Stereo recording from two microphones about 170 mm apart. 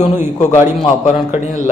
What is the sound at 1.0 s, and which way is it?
Speech, 45° left (ahead or behind).